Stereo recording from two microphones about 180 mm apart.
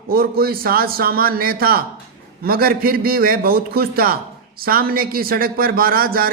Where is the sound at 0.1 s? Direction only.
55° right (ahead or behind).